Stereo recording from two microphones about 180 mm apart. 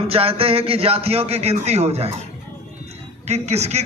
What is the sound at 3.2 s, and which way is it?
Speech, 35° right (ahead or behind).